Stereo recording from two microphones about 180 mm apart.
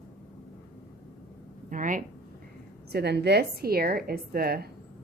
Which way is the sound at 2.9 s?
65° right (ahead or behind).